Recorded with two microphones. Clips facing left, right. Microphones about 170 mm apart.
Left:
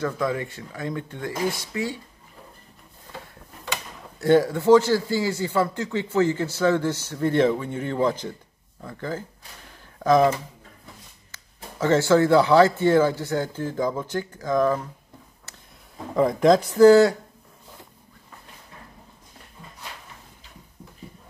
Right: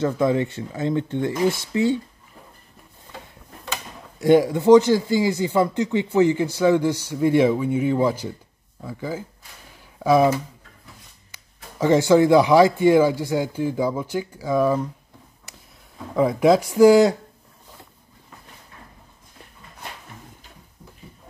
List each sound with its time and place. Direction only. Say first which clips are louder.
0.0 s speech: right 6 dB; 25° right (ahead or behind)
4.2 s speech: right 2 dB; 15° right (ahead or behind)
11.3 s speech: right 2 dB; 15° right (ahead or behind)
16.2 s speech: right 1 dB; 5° right (ahead or behind)